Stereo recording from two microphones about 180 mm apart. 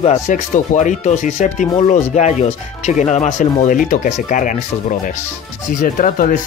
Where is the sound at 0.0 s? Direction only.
40° left (ahead or behind).